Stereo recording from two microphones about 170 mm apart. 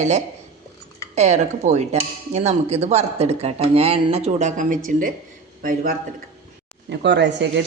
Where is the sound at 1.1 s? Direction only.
40° right (ahead or behind).